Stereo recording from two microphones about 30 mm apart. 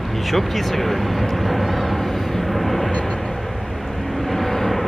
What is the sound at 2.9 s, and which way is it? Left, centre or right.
Vehicle, left.